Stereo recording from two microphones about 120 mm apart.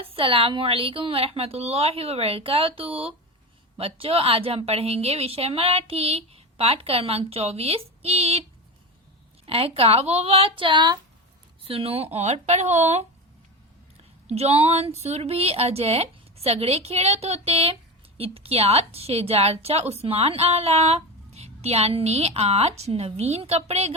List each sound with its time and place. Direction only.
0.0 s a woman's voice: 50° right (ahead or behind)
9.5 s a woman's voice: 55° right (ahead or behind)
14.3 s a woman's voice: 60° right (ahead or behind)